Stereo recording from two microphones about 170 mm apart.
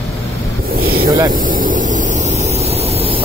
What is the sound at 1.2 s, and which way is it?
Vehicle, 55° right (ahead or behind).